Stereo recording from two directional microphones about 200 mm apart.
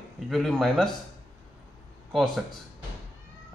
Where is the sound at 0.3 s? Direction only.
Centre (ahead or behind).